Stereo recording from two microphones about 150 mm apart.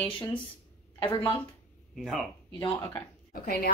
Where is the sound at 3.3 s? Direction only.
75° left (ahead or behind).